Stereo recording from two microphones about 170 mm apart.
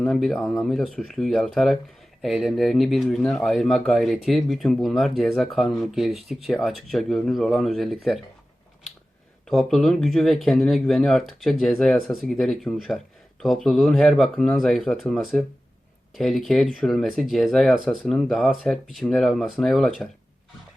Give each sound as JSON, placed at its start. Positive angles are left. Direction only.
{"t": 0.0, "sound": "speech", "side_deg": 0}
{"t": 9.5, "sound": "speech", "side_deg": 0}